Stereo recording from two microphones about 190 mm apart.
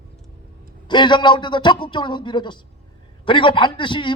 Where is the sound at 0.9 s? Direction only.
25° left (ahead or behind).